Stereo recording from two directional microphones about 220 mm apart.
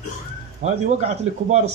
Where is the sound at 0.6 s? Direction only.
30° right (ahead or behind).